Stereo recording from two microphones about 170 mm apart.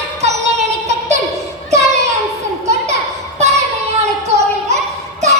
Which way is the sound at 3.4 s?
40° right (ahead or behind).